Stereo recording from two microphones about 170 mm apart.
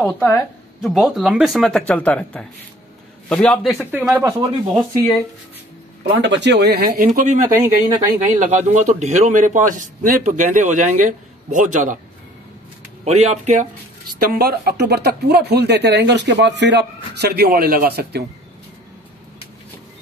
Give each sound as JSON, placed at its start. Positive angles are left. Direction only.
{"t": 0.0, "sound": "speech", "side_deg": 10}
{"t": 0.8, "sound": "speech", "side_deg": 0}
{"t": 4.2, "sound": "speech", "side_deg": -20}
{"t": 6.2, "sound": "speech", "side_deg": -90}
{"t": 7.1, "sound": "a man's voice", "side_deg": -45}
{"t": 7.4, "sound": "speech", "side_deg": -20}
{"t": 8.4, "sound": "a man's voice", "side_deg": -45}
{"t": 13.0, "sound": "speech", "side_deg": -40}
{"t": 14.2, "sound": "speech", "side_deg": -65}